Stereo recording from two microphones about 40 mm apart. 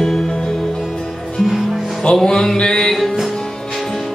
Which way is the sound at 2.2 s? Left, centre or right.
Centre.